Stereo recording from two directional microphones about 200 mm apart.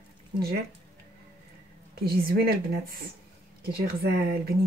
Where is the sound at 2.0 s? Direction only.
50° right (ahead or behind).